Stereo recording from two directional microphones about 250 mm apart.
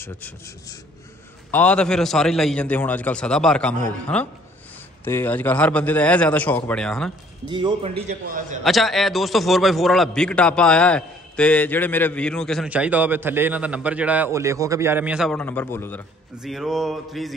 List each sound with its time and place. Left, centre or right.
1.5 s a man's voice: centre
7.4 s a man's voice: centre
7.9 s a man's voice: right
8.6 s a man's voice: centre